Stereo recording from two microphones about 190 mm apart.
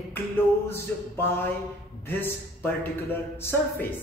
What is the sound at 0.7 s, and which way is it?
A man's voice, 10° left (ahead or behind).